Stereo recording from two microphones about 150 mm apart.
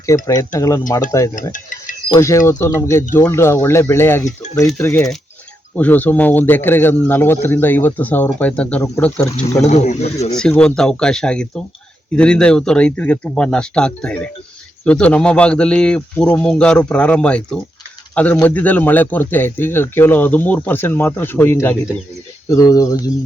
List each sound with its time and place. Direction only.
0.3 s speech: 20° left (ahead or behind)
2.0 s speech: 20° left (ahead or behind)
9.6 s speech: 50° left (ahead or behind)
10.3 s speech: 5° left (ahead or behind); by 23.0 s 25° left (ahead or behind)